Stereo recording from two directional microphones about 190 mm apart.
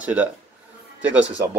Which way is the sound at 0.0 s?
5° right (ahead or behind).